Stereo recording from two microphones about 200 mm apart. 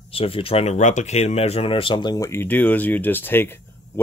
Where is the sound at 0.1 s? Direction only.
30° left (ahead or behind).